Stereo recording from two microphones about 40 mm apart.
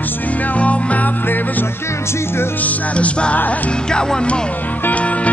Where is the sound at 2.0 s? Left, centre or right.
Left.